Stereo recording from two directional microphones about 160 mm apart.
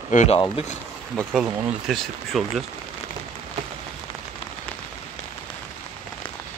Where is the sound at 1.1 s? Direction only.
5° right (ahead or behind).